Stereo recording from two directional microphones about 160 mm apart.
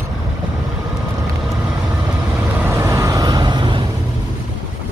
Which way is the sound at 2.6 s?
15° right (ahead or behind).